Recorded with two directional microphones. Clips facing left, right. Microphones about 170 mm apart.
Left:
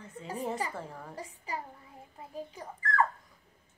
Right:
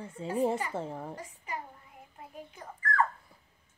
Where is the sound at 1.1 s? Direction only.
30° left (ahead or behind).